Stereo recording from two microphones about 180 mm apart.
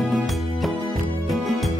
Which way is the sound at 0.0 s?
Centre (ahead or behind).